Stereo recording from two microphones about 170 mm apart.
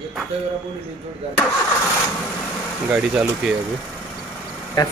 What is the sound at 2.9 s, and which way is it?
Speech, 10° right (ahead or behind).